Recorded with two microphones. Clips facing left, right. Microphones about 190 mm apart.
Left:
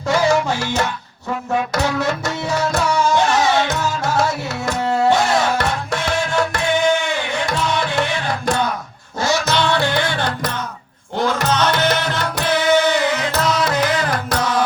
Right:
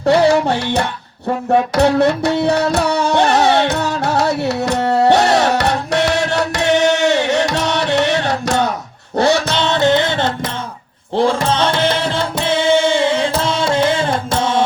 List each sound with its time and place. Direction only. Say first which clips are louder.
1.5 s music: right 7 dB; 60° right (ahead or behind); by 8.7 s 80° right
9.1 s music: right 6 dB; 60° right (ahead or behind)
9.5 s music: right 4 dB; 20° right (ahead or behind)